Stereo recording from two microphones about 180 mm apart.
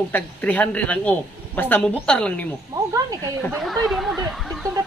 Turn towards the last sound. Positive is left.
turn(degrees=0)  # may be behind; listen again after turning